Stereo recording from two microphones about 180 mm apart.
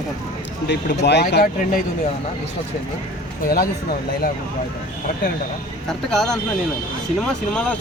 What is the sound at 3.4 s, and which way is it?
Speech, 55° left (ahead or behind).